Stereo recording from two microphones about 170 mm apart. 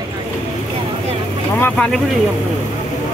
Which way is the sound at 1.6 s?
10° left (ahead or behind).